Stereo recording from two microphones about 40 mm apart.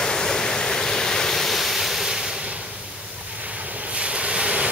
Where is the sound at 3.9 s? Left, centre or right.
Right.